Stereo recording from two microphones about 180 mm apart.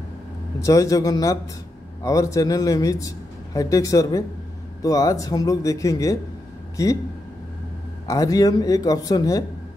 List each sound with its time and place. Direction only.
0.7 s a man's voice: 20° left (ahead or behind)
8.1 s a man's voice: 20° left (ahead or behind)